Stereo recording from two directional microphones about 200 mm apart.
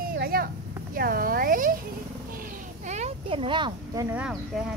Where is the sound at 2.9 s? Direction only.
35° right (ahead or behind); by 4.2 s 15° right (ahead or behind).